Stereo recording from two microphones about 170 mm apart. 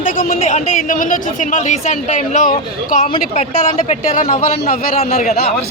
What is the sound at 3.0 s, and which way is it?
A man's voice, 40° left (ahead or behind).